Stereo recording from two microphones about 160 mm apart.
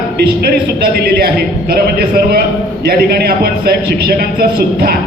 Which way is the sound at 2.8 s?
75° right (ahead or behind).